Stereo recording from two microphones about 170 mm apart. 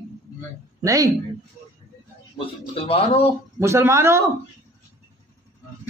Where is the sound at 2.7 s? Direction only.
35° left (ahead or behind).